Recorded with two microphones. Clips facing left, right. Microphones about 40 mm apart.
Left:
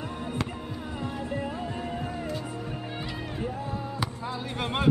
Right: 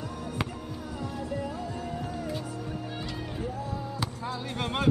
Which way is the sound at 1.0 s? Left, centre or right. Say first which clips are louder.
Left 1 dB; left.